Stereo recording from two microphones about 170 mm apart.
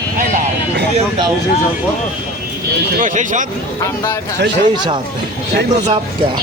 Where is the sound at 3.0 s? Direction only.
50° right (ahead or behind).